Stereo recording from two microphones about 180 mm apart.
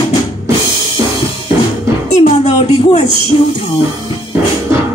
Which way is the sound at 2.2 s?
40° left (ahead or behind).